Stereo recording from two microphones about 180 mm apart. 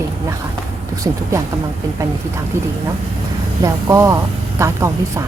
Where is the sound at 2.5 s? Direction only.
15° right (ahead or behind).